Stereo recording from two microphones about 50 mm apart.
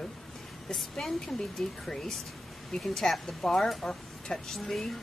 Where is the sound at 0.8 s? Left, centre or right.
Centre.